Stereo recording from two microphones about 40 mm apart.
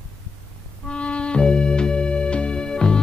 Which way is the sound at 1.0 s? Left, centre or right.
Left.